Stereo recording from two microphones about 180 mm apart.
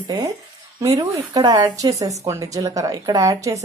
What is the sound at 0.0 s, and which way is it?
Speech, 20° right (ahead or behind).